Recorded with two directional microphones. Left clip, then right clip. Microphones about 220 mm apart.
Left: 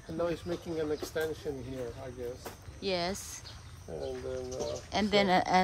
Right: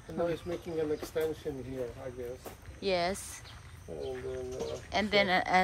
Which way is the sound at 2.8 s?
10° left (ahead or behind).